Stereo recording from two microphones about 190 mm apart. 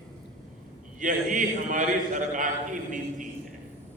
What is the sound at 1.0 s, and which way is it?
A man's voice, 45° right (ahead or behind).